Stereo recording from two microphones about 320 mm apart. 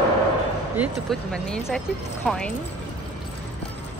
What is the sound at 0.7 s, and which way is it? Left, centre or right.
Speech, centre.